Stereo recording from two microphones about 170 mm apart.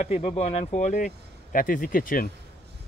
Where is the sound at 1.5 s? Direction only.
55° left (ahead or behind).